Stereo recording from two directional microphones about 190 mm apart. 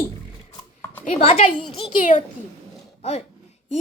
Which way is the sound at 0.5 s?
15° left (ahead or behind).